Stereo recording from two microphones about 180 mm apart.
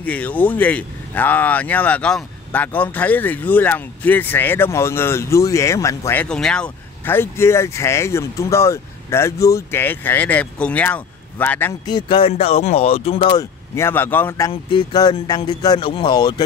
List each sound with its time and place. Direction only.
0.0 s speech: 10° left (ahead or behind)
6.2 s speech: 5° left (ahead or behind)
11.8 s speech: 25° left (ahead or behind)
13.4 s speech: 15° left (ahead or behind)
14.5 s speech: 30° left (ahead or behind)